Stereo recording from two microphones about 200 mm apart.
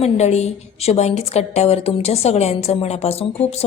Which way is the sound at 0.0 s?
35° left (ahead or behind).